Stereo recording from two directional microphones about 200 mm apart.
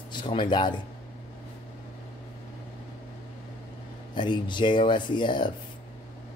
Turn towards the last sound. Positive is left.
turn(degrees=25)  # may be behind; listen again after turning